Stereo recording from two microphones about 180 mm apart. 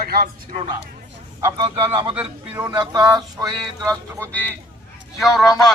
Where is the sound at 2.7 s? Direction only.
25° right (ahead or behind).